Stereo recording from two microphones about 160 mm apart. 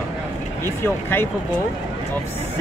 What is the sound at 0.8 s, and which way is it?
Speech, 15° left (ahead or behind).